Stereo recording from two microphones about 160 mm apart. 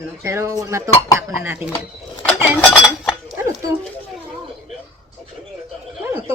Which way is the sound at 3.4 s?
20° right (ahead or behind).